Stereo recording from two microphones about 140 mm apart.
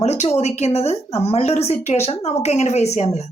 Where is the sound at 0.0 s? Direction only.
50° left (ahead or behind).